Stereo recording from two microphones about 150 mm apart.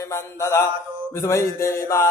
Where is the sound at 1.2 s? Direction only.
20° left (ahead or behind).